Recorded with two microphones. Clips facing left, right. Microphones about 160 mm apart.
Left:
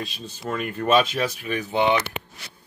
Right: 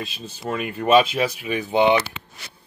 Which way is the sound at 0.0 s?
5° right (ahead or behind).